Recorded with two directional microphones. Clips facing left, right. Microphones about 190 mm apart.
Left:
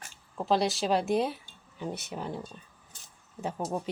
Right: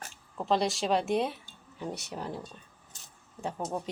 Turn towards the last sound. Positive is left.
turn(degrees=5)  # may be behind; listen again after turning